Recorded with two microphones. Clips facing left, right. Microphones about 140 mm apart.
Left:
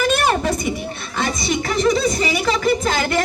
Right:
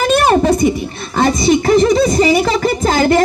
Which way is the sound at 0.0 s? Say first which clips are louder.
Right 6 dB; 40° right (ahead or behind).